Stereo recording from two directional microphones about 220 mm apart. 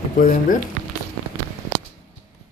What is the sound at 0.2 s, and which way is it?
Speech, 40° left (ahead or behind).